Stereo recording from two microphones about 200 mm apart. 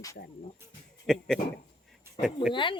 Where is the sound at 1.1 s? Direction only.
Centre (ahead or behind).